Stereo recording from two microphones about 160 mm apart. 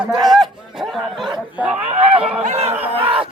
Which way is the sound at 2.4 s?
40° right (ahead or behind).